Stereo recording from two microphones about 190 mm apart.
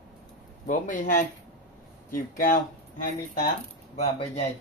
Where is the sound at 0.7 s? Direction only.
45° left (ahead or behind).